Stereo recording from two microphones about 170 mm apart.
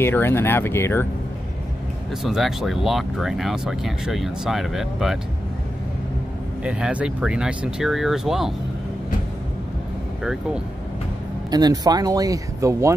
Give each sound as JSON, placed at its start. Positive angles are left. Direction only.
{"t": 0.0, "sound": "speech", "side_deg": 15}
{"t": 2.2, "sound": "speech", "side_deg": 0}
{"t": 6.6, "sound": "speech", "side_deg": -5}
{"t": 10.2, "sound": "speech", "side_deg": -5}
{"t": 11.5, "sound": "speech", "side_deg": -25}